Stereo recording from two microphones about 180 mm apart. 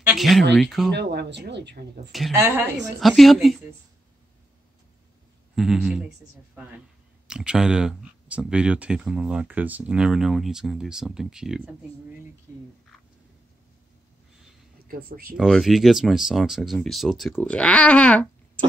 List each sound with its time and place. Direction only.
0.0 s a sound: centre (ahead or behind)
0.6 s speech: centre (ahead or behind)
0.9 s speech: 70° right (ahead or behind)
2.3 s speech: 10° right (ahead or behind)
5.6 s speech: 5° right (ahead or behind)
7.2 s speech: 5° right (ahead or behind)
14.9 s speech: 55° right (ahead or behind)
15.3 s speech: centre (ahead or behind)